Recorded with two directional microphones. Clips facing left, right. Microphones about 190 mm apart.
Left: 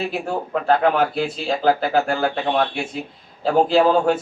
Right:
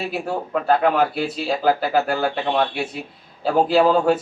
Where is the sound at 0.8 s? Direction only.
5° right (ahead or behind).